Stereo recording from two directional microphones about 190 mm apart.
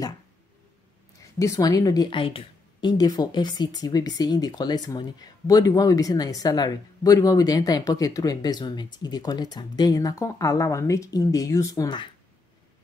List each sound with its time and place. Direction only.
1.4 s a woman's voice: 15° left (ahead or behind)